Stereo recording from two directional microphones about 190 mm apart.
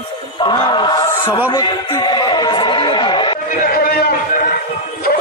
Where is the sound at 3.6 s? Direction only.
50° left (ahead or behind).